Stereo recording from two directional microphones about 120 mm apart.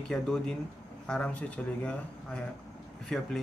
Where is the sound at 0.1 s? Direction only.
5° left (ahead or behind).